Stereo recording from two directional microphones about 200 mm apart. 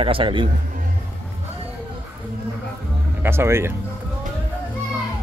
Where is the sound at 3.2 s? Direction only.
10° right (ahead or behind).